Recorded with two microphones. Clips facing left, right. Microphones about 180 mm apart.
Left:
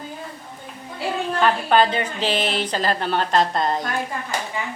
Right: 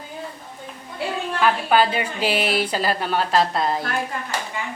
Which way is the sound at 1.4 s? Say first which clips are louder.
Left 1 dB; 5° right (ahead or behind).